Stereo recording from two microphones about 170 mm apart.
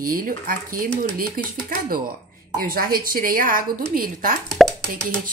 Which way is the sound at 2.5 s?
60° right (ahead or behind).